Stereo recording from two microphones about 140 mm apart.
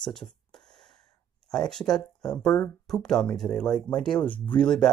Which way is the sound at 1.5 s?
5° left (ahead or behind).